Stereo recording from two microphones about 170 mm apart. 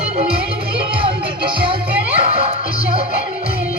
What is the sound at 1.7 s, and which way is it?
Music, 35° right (ahead or behind).